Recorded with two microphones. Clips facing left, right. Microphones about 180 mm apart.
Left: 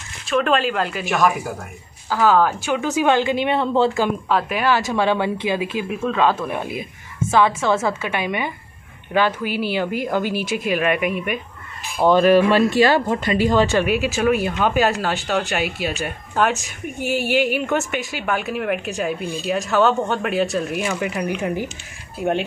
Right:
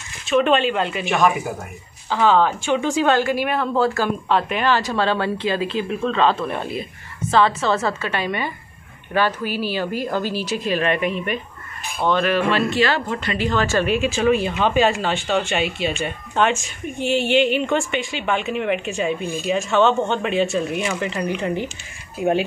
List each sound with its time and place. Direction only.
0.3 s a woman's voice: centre (ahead or behind)
3.1 s a woman's voice: 20° left (ahead or behind)
4.3 s speech: 5° left (ahead or behind)
12.0 s speech: 35° left (ahead or behind)
12.9 s a woman's voice: 15° left (ahead or behind)